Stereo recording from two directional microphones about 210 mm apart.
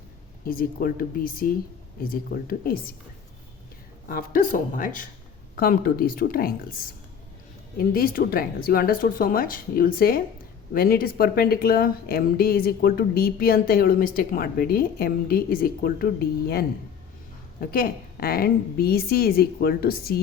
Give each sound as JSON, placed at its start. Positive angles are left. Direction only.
{"t": 0.4, "sound": "speech", "side_deg": 45}
{"t": 4.1, "sound": "speech", "side_deg": 45}
{"t": 7.8, "sound": "speech", "side_deg": 45}
{"t": 17.6, "sound": "speech", "side_deg": 45}